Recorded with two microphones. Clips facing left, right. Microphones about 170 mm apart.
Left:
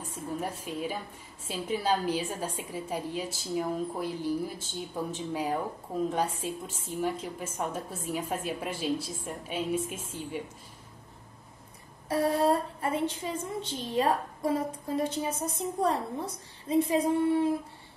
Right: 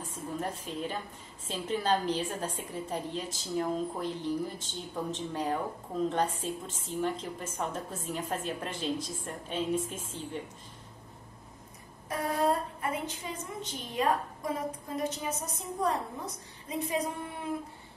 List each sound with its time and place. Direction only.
0.0 s a woman's voice: 10° left (ahead or behind)
12.1 s a woman's voice: 30° left (ahead or behind)